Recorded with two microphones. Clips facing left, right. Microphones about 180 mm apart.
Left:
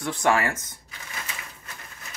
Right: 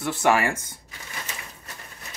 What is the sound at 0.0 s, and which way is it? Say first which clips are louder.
Speech: right 2 dB; 5° right (ahead or behind).